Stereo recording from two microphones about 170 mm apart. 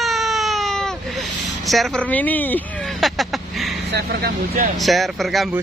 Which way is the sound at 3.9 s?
65° right (ahead or behind).